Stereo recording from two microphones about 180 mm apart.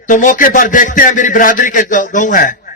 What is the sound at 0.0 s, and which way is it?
A man's voice, 45° left (ahead or behind).